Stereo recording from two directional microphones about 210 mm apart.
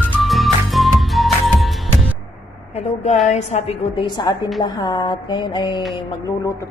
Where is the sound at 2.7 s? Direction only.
30° left (ahead or behind).